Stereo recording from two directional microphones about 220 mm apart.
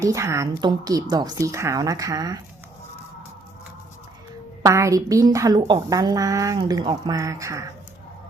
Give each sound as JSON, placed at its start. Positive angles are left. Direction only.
{"t": 0.0, "sound": "a woman's voice", "side_deg": -15}
{"t": 4.6, "sound": "a woman's voice", "side_deg": -15}